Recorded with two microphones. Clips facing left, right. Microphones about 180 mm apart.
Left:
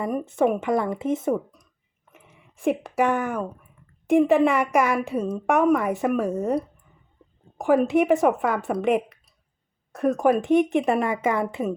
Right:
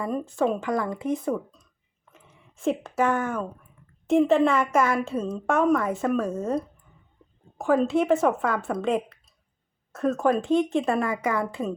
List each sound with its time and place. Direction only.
0.0 s speech: 15° left (ahead or behind)
2.0 s a sound: 15° left (ahead or behind)
4.0 s a woman's voice: 15° left (ahead or behind)
7.6 s a woman's voice: 15° left (ahead or behind)